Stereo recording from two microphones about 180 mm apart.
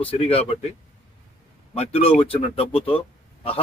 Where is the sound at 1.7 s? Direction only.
35° left (ahead or behind).